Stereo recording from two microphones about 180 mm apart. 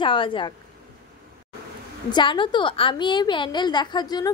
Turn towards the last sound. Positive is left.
turn(degrees=20)  # may be behind; listen again after turning